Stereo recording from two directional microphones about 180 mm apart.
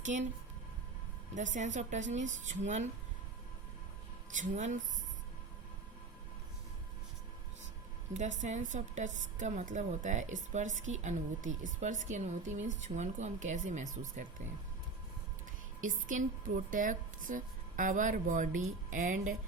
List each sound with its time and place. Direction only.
0.0 s speech: 45° right (ahead or behind)
1.4 s a woman's voice: 45° right (ahead or behind)
4.3 s a woman's voice: 45° right (ahead or behind)
8.1 s a woman's voice: 40° right (ahead or behind)
15.8 s a woman's voice: 45° right (ahead or behind)